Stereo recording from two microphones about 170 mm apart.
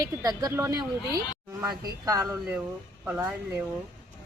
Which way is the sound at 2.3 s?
10° right (ahead or behind).